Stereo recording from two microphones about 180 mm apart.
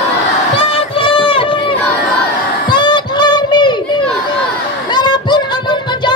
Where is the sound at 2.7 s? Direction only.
25° left (ahead or behind).